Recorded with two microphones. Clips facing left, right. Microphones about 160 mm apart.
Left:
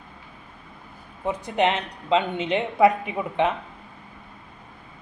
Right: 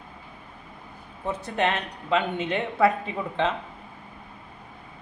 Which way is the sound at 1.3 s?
15° left (ahead or behind).